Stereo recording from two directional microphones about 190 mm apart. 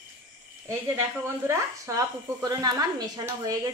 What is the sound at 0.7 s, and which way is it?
Speech, 15° right (ahead or behind).